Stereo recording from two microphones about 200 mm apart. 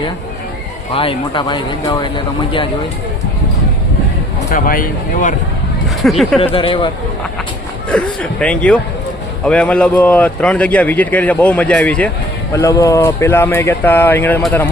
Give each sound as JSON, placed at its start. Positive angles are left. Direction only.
{"t": 0.9, "sound": "speech", "side_deg": 25}
{"t": 4.5, "sound": "speech", "side_deg": 45}
{"t": 6.0, "sound": "speech", "side_deg": 0}
{"t": 6.4, "sound": "speech", "side_deg": 25}
{"t": 7.9, "sound": "speech", "side_deg": 5}